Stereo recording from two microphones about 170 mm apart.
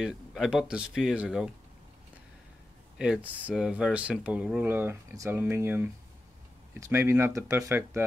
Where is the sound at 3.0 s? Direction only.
5° right (ahead or behind).